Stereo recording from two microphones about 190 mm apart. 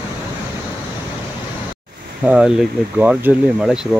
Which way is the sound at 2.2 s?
5° right (ahead or behind).